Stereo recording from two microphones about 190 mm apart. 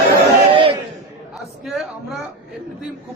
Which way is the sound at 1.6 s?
Centre (ahead or behind).